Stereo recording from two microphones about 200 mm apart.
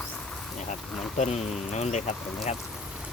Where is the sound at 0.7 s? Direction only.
35° left (ahead or behind).